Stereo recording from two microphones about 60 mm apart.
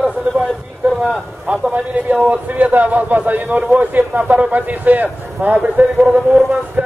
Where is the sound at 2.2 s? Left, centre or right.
Right.